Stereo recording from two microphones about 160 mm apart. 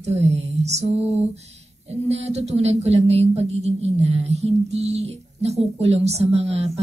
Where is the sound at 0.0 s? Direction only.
45° right (ahead or behind).